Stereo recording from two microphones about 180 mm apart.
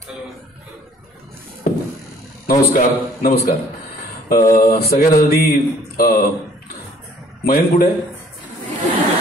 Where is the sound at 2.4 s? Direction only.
55° left (ahead or behind).